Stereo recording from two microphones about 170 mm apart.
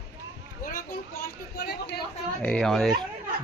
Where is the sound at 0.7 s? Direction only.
65° left (ahead or behind).